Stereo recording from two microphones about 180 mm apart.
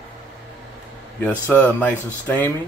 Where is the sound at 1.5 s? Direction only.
10° left (ahead or behind).